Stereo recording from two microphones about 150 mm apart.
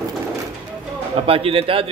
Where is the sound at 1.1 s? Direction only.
40° right (ahead or behind).